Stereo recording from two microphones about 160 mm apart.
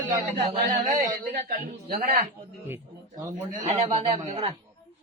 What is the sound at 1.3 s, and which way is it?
Speech, 60° right (ahead or behind).